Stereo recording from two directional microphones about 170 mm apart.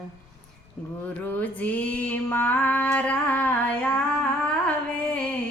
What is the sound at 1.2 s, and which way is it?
Female singing, 10° left (ahead or behind).